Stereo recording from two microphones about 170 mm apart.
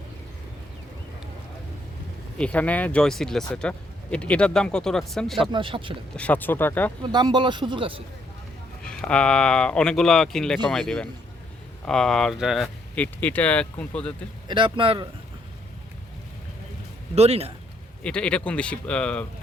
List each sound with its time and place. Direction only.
2.4 s speech: 10° left (ahead or behind)
5.4 s speech: 30° right (ahead or behind)
6.1 s speech: 10° left (ahead or behind)
7.0 s speech: 25° right (ahead or behind)
8.8 s speech: 5° left (ahead or behind)
14.4 s speech: 30° right (ahead or behind)
17.2 s speech: 35° right (ahead or behind)
18.0 s speech: 5° left (ahead or behind)